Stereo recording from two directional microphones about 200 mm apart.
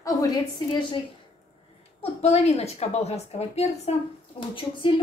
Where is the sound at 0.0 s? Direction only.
20° left (ahead or behind).